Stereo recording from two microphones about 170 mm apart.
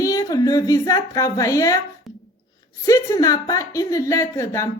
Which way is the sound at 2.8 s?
20° left (ahead or behind).